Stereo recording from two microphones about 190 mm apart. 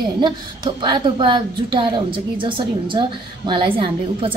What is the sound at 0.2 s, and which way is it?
A woman's voice, 25° right (ahead or behind).